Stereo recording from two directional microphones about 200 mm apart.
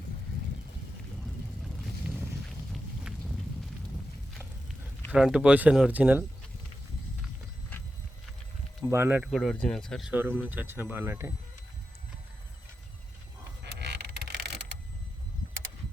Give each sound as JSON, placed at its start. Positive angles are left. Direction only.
{"t": 1.2, "sound": "vehicle", "side_deg": 0}
{"t": 2.7, "sound": "a sound", "side_deg": 0}
{"t": 5.1, "sound": "speech", "side_deg": -5}
{"t": 8.8, "sound": "speech", "side_deg": -10}
{"t": 13.7, "sound": "vehicle", "side_deg": -55}